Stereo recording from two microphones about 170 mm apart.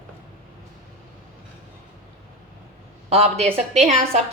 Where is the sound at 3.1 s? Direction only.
35° right (ahead or behind).